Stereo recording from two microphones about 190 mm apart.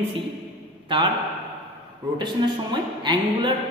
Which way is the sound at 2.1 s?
25° right (ahead or behind).